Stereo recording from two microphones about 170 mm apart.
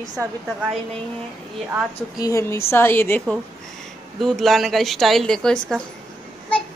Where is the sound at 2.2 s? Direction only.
15° left (ahead or behind).